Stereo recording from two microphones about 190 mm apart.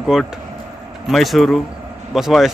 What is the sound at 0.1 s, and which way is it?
Speech, centre (ahead or behind).